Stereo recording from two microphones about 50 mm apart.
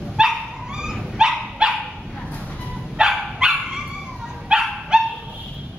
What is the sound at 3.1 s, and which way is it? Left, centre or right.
Dog, centre.